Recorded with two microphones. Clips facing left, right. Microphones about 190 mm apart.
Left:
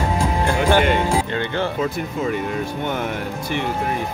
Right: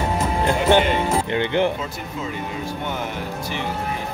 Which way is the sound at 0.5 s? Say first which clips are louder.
Right 1 dB; 20° right (ahead or behind).